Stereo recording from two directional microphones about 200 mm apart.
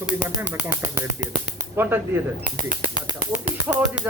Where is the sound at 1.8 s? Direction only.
10° right (ahead or behind).